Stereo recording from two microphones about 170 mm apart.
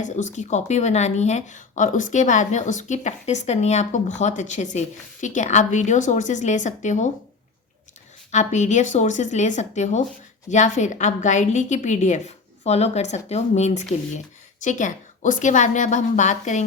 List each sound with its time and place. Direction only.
0.0 s speech: 45° left (ahead or behind)
8.3 s speech: 45° left (ahead or behind)